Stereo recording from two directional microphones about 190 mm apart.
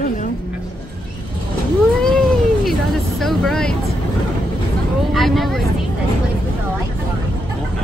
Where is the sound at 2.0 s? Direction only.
Centre (ahead or behind).